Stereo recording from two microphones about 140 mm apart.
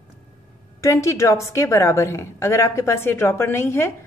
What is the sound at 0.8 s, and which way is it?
A woman's voice, 20° left (ahead or behind).